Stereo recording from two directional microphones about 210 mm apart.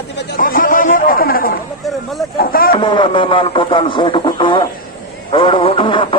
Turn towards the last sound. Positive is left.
turn(degrees=25)  # may be behind; listen again after turning